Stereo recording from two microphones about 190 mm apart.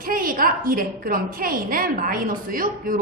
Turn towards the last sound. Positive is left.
turn(degrees=-45)  # may be behind; listen again after turning